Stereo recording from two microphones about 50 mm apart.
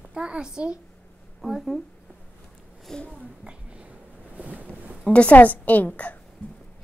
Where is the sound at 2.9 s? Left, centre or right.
Centre.